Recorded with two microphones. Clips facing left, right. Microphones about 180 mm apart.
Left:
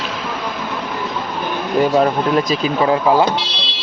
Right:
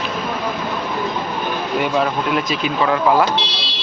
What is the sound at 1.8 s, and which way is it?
Speech, 35° left (ahead or behind).